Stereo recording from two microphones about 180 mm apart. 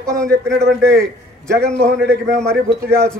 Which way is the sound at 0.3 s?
65° right (ahead or behind).